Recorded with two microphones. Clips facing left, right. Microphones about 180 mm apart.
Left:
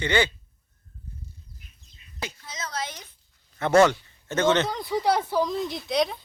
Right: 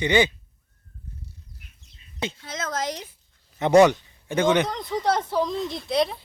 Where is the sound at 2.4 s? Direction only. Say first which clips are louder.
Right 5 dB; 55° right (ahead or behind).